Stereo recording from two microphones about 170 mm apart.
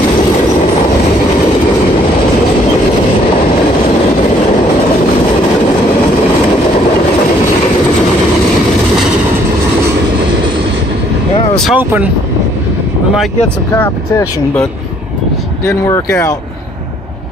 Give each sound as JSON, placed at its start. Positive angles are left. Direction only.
{"t": 11.7, "sound": "speech", "side_deg": -10}
{"t": 13.7, "sound": "speech", "side_deg": 10}